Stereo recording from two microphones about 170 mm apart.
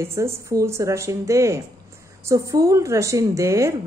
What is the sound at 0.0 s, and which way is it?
Speech, 15° right (ahead or behind).